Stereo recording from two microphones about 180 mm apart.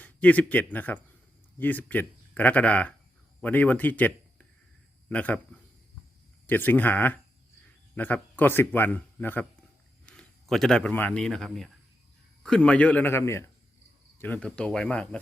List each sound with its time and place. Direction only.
0.0 s speech: 10° left (ahead or behind)
6.5 s speech: 10° left (ahead or behind)